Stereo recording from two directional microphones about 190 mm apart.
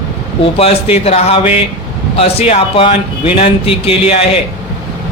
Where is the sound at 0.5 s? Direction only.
30° left (ahead or behind).